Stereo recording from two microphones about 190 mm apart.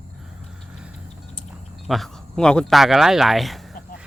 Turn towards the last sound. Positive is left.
turn(degrees=0)  # may be behind; listen again after turning